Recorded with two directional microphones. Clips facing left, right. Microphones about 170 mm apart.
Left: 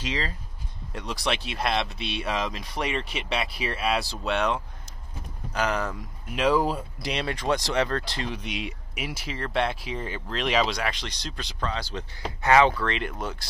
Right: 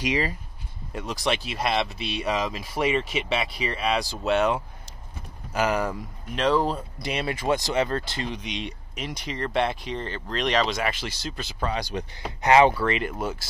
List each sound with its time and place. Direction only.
0.0 s speech: 10° right (ahead or behind)
0.9 s speech: centre (ahead or behind)
6.3 s speech: 10° left (ahead or behind)
7.1 s speech: 5° right (ahead or behind)
11.7 s speech: 15° right (ahead or behind)
12.7 s speech: 5° right (ahead or behind)